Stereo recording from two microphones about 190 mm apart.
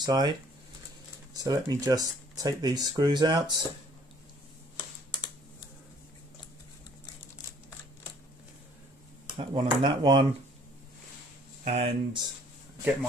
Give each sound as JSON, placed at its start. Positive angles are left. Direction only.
{"t": 0.0, "sound": "speech", "side_deg": -20}
{"t": 1.3, "sound": "speech", "side_deg": -20}
{"t": 4.7, "sound": "computer keyboard", "side_deg": 25}
{"t": 9.3, "sound": "speech", "side_deg": -25}
{"t": 11.6, "sound": "speech", "side_deg": -35}